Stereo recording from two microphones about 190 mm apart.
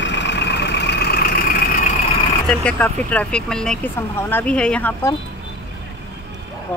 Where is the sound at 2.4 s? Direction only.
5° left (ahead or behind).